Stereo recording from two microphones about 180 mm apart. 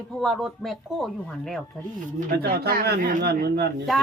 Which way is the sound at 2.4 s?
60° right (ahead or behind).